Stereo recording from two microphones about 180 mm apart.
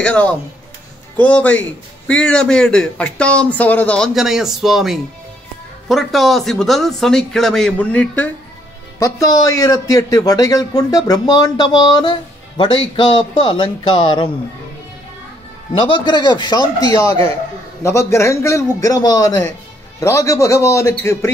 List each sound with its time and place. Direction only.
0.0 s a man's voice: 5° left (ahead or behind); by 14.3 s 30° left (ahead or behind)
15.7 s speech: 25° left (ahead or behind)
17.8 s a man's voice: 15° left (ahead or behind)